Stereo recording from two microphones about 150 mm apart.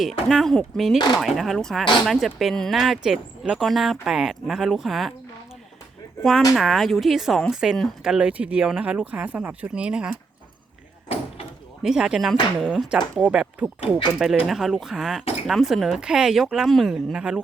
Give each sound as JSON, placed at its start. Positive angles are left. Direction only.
{"t": 0.0, "sound": "speech", "side_deg": 0}
{"t": 6.5, "sound": "speech", "side_deg": 0}
{"t": 11.8, "sound": "speech", "side_deg": -5}